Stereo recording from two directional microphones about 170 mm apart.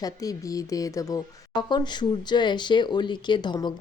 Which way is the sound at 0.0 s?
20° left (ahead or behind).